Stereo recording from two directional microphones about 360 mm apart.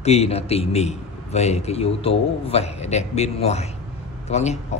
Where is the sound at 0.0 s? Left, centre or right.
Centre.